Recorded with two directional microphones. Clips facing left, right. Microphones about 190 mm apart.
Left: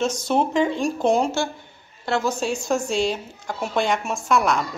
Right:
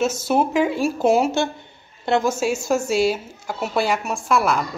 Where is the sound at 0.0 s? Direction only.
5° right (ahead or behind).